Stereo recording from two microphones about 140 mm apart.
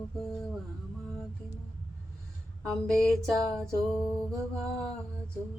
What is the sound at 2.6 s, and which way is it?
Mantra, 5° left (ahead or behind).